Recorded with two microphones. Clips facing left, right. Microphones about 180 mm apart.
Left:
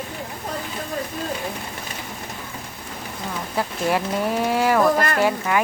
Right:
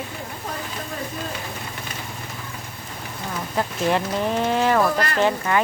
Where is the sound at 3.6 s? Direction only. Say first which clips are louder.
Right 1 dB; 10° left (ahead or behind).